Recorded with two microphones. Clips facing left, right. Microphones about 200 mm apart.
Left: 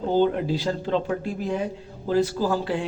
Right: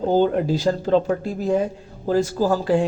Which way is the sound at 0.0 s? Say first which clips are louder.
Right 3 dB; 45° right (ahead or behind).